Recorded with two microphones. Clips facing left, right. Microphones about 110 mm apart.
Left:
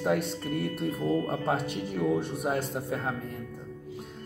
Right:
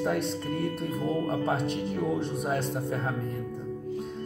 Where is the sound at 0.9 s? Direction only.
25° right (ahead or behind).